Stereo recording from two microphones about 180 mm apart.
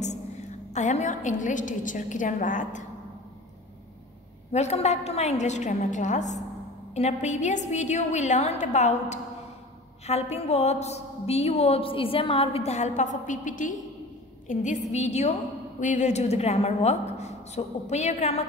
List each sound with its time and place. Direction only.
0.7 s a woman's voice: 40° left (ahead or behind)
4.5 s a woman's voice: 40° left (ahead or behind)